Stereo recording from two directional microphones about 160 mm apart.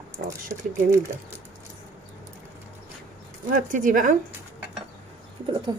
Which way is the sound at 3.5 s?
55° right (ahead or behind).